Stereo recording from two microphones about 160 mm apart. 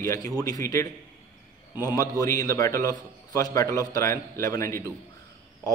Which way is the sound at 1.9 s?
20° left (ahead or behind).